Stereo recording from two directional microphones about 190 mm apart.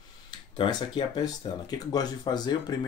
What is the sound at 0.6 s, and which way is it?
Speech, 25° left (ahead or behind).